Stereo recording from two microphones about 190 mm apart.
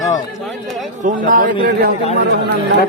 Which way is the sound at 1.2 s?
45° right (ahead or behind).